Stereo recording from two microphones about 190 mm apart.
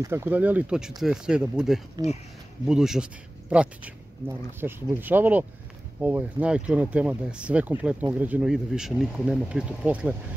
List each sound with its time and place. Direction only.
0.0 s speech: 10° right (ahead or behind)